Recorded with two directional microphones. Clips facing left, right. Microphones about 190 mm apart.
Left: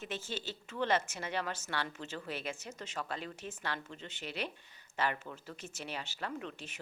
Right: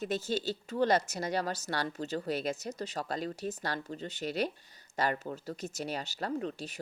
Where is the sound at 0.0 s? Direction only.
40° right (ahead or behind).